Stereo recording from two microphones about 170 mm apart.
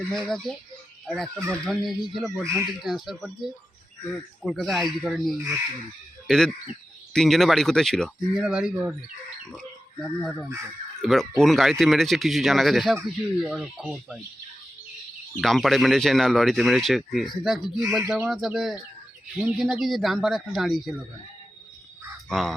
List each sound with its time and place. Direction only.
0.0 s speech: 5° left (ahead or behind)
2.4 s speech: 15° right (ahead or behind)
2.8 s speech: centre (ahead or behind)
15.4 s speech: centre (ahead or behind)
22.3 s speech: 5° left (ahead or behind)